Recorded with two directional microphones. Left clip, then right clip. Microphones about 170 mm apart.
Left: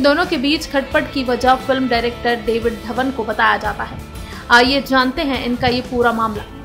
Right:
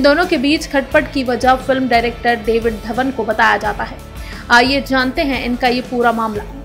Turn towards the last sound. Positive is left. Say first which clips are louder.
# right 1 dB
turn(degrees=-15)  # may be behind; listen again after turning